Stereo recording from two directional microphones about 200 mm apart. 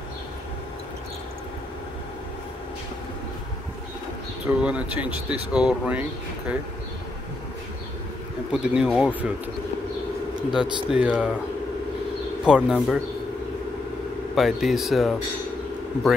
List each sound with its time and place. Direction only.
4.5 s speech: 5° right (ahead or behind)
8.5 s speech: 5° right (ahead or behind)
10.5 s speech: 5° right (ahead or behind)
12.4 s speech: 5° right (ahead or behind)
14.3 s speech: centre (ahead or behind)